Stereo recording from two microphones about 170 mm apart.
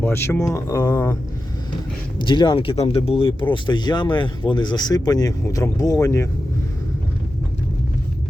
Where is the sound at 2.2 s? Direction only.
25° left (ahead or behind).